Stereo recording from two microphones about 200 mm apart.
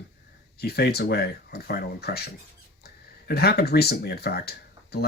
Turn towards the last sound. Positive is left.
turn(degrees=50)  # may be behind; listen again after turning